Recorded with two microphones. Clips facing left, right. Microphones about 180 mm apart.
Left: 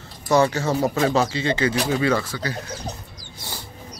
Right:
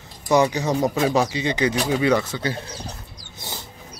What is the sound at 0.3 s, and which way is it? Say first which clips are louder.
Speech: even; 15° right (ahead or behind).